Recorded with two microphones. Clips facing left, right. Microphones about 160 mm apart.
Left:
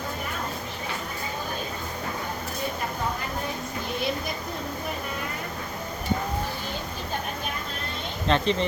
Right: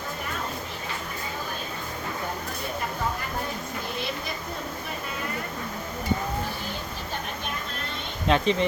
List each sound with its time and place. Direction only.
8.3 s speech: 5° right (ahead or behind)